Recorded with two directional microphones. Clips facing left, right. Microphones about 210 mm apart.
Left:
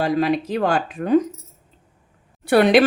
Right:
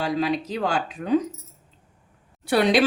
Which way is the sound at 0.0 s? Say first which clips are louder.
Left 5 dB; 55° left (ahead or behind).